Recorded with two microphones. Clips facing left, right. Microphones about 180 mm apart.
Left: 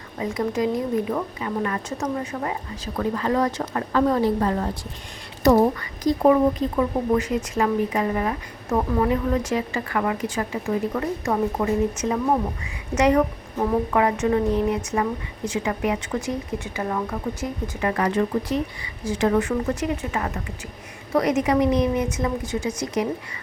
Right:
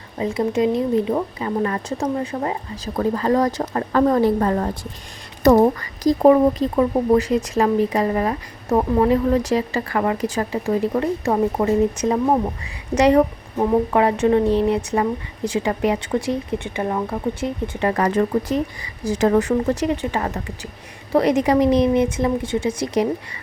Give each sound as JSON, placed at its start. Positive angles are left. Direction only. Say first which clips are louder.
{"t": 0.2, "sound": "speech", "louder": "right 4 dB", "side_deg": -25}
{"t": 17.7, "sound": "speech", "louder": "right 3 dB", "side_deg": -35}